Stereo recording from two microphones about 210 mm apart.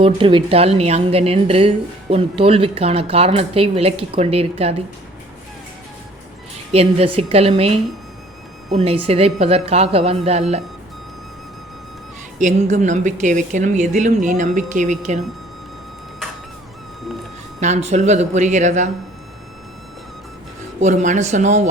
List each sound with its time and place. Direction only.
0.0 s a woman's voice: 25° right (ahead or behind)
6.5 s a woman's voice: 30° right (ahead or behind)
12.4 s a woman's voice: 35° right (ahead or behind)
17.6 s a woman's voice: 30° right (ahead or behind)
20.8 s a woman's voice: 35° right (ahead or behind)